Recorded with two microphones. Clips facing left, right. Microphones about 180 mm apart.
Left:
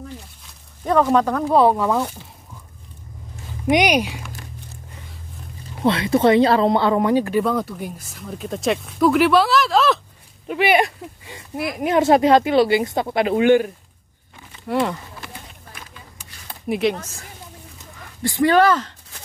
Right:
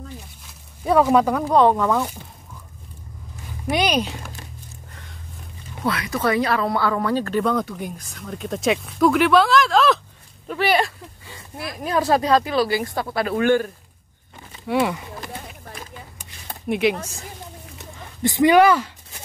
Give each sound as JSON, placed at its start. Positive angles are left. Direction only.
{"t": 0.8, "sound": "speech", "side_deg": -10}
{"t": 1.5, "sound": "speech", "side_deg": 10}
{"t": 3.6, "sound": "speech", "side_deg": 15}
{"t": 5.9, "sound": "speech", "side_deg": 25}
{"t": 7.4, "sound": "speech", "side_deg": 0}
{"t": 10.5, "sound": "speech", "side_deg": 10}
{"t": 14.7, "sound": "speech", "side_deg": -5}
{"t": 15.1, "sound": "a sound", "side_deg": -40}
{"t": 16.6, "sound": "speech", "side_deg": 0}
{"t": 17.9, "sound": "a sound", "side_deg": -20}